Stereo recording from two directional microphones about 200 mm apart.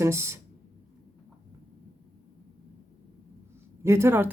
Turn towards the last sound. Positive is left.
turn(degrees=-10)  # may be behind; listen again after turning